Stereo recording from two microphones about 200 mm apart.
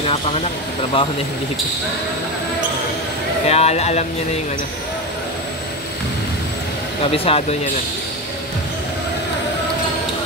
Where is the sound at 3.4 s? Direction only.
30° left (ahead or behind).